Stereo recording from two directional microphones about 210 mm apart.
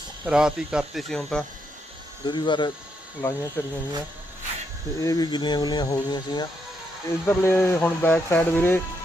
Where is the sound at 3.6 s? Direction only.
10° left (ahead or behind).